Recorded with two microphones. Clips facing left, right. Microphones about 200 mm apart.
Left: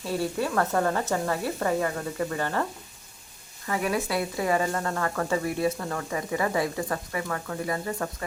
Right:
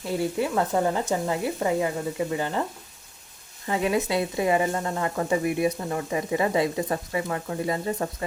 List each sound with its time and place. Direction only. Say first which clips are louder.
0.0 s speech: right 2 dB; 15° right (ahead or behind)
3.7 s speech: right 3 dB; 20° right (ahead or behind)